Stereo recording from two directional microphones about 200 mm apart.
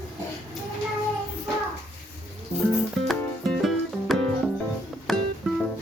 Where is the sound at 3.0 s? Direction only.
Centre (ahead or behind).